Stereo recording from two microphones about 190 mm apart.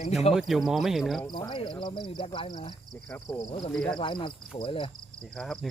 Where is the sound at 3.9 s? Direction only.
25° left (ahead or behind).